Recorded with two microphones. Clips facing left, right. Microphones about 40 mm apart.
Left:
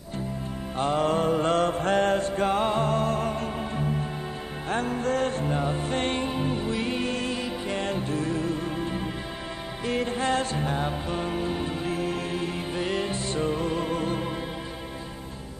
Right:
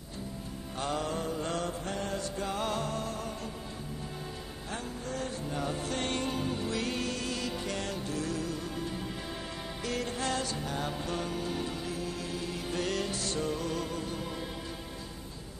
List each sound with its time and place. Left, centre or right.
0.7 s mantra: left
4.6 s music: left
5.6 s music: left
12.7 s music: left